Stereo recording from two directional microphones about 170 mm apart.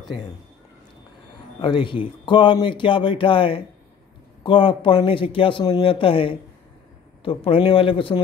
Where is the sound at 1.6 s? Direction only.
30° left (ahead or behind).